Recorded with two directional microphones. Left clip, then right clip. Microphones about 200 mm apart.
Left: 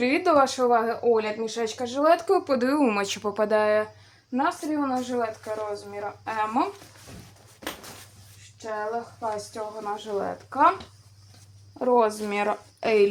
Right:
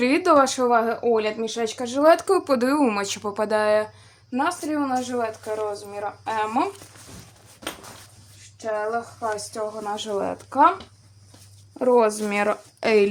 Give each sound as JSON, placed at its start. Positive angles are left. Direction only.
{"t": 0.0, "sound": "speech", "side_deg": -35}
{"t": 2.6, "sound": "speech", "side_deg": -10}
{"t": 4.7, "sound": "a woman's voice", "side_deg": -25}
{"t": 9.2, "sound": "a woman's voice", "side_deg": -35}
{"t": 11.8, "sound": "speech", "side_deg": -35}